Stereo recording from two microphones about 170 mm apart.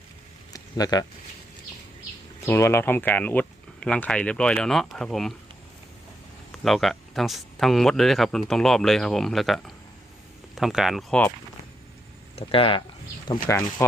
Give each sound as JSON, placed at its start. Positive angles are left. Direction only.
{"t": 0.5, "sound": "a sound", "side_deg": 20}
{"t": 2.4, "sound": "speech", "side_deg": 15}
{"t": 6.6, "sound": "speech", "side_deg": 0}
{"t": 12.4, "sound": "speech", "side_deg": 35}